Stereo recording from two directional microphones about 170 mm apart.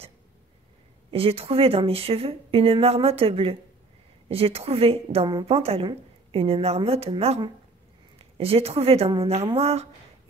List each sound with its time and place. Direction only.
1.1 s speech: 35° right (ahead or behind)